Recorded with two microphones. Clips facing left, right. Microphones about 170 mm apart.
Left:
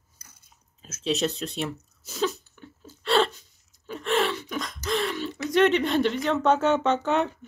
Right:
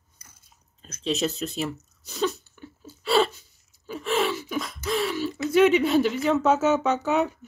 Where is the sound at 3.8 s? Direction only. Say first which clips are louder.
Even; 5° right (ahead or behind).